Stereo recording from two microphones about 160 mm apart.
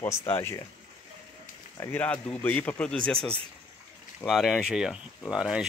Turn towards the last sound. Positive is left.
turn(degrees=-5)  # may be behind; listen again after turning